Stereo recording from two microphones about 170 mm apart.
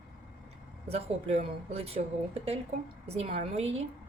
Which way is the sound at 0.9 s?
40° right (ahead or behind).